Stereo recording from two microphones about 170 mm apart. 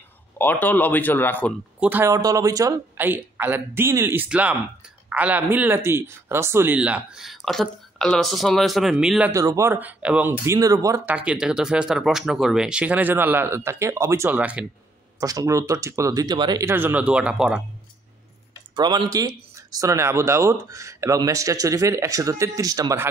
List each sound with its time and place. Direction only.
0.4 s speech: 10° left (ahead or behind)
1.8 s speech: 10° right (ahead or behind)
9.3 s speech: 20° right (ahead or behind)
11.1 s speech: 5° right (ahead or behind)
15.1 s speech: 20° right (ahead or behind)
16.6 s speech: 10° right (ahead or behind)
18.8 s speech: 25° right (ahead or behind)